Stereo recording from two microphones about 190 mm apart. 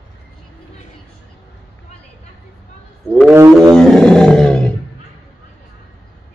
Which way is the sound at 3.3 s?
15° right (ahead or behind).